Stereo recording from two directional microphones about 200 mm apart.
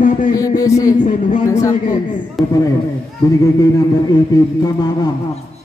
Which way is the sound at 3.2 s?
15° left (ahead or behind).